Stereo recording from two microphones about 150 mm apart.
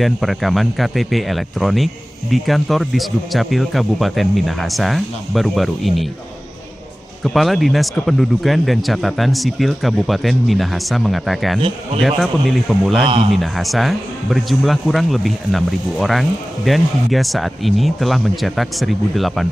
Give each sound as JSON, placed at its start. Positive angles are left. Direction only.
{"t": 0.0, "sound": "speech", "side_deg": 0}
{"t": 7.2, "sound": "speech", "side_deg": 0}